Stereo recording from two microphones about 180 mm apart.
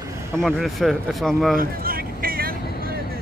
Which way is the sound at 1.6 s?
55° right (ahead or behind).